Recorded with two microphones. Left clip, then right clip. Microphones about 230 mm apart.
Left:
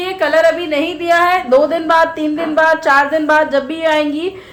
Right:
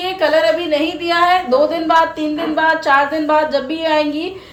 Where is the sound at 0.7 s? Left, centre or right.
Centre.